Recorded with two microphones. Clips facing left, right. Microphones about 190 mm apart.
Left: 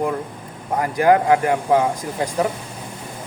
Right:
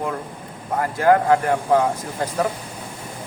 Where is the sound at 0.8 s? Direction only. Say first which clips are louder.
Left 1 dB; 15° left (ahead or behind).